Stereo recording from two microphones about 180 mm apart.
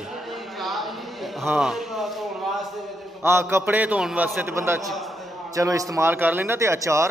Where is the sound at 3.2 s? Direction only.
15° right (ahead or behind).